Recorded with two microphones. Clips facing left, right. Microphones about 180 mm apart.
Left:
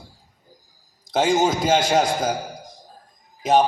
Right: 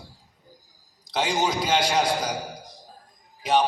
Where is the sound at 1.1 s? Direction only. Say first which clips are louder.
Left 6 dB; 45° left (ahead or behind).